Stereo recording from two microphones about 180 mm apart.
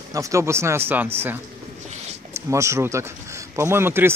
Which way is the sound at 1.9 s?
40° right (ahead or behind).